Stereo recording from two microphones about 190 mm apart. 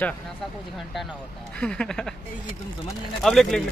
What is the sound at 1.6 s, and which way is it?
Speech, 5° left (ahead or behind).